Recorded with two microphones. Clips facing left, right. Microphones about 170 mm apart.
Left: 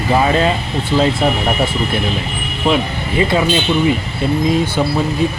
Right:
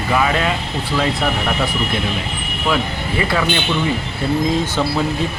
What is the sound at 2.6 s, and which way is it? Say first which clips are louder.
Speech: left 4 dB; 25° left (ahead or behind).